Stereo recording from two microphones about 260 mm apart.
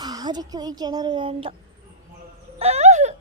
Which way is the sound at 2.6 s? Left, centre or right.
Right.